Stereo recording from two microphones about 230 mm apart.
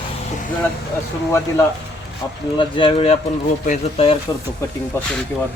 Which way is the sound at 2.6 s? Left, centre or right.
Left.